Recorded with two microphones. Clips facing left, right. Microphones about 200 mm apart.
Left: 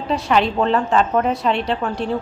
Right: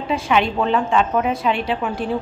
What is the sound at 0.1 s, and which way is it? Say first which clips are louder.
A woman's voice: left 1 dB; centre (ahead or behind).